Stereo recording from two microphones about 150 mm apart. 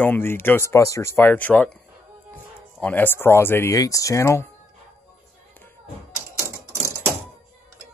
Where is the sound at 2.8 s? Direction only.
15° left (ahead or behind).